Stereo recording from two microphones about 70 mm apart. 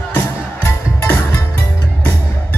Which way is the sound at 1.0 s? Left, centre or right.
Left.